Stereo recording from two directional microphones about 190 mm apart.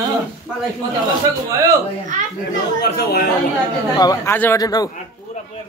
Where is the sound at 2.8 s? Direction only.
55° left (ahead or behind).